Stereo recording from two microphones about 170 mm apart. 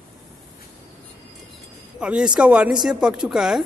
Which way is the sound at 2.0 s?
5° right (ahead or behind).